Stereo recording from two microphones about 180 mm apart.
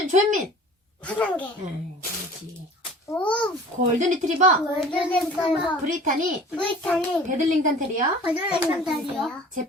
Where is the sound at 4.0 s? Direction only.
40° right (ahead or behind).